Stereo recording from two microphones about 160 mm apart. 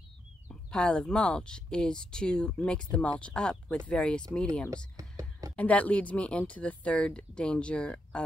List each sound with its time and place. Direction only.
0.5 s speech: 5° left (ahead or behind)
4.9 s a sound: 20° right (ahead or behind)
5.6 s speech: 10° left (ahead or behind)